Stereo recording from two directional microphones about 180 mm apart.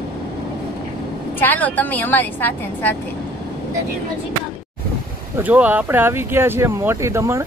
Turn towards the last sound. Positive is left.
turn(degrees=-15)  # may be behind; listen again after turning